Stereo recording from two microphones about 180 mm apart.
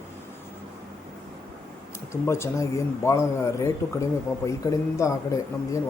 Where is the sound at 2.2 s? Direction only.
15° left (ahead or behind).